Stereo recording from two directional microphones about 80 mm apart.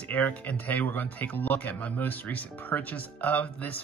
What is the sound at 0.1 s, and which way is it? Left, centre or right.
Speech, centre.